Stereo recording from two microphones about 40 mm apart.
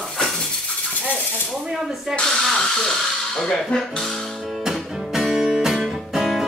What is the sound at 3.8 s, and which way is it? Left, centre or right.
Speech, centre.